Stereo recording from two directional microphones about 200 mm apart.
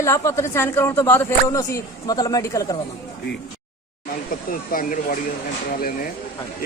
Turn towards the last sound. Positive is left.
turn(degrees=45)  # may be behind; listen again after turning